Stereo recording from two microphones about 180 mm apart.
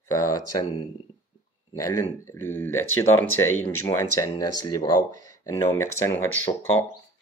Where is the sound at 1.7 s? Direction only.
15° left (ahead or behind).